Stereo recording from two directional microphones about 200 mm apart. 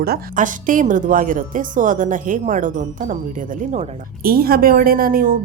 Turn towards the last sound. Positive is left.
turn(degrees=-45)  # may be behind; listen again after turning